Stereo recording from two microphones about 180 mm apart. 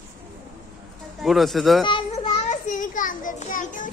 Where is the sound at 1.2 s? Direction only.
Centre (ahead or behind).